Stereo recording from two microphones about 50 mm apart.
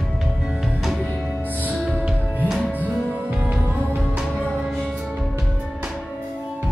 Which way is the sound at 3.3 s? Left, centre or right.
Centre.